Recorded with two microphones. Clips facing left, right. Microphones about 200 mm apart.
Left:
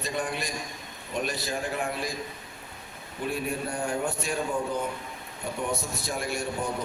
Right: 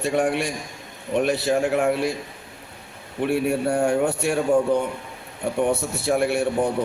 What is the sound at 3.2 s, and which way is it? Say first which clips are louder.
A man's voice: right 9 dB; 70° right (ahead or behind).